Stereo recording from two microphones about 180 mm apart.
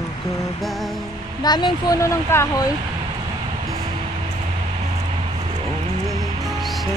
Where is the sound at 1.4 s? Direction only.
25° left (ahead or behind).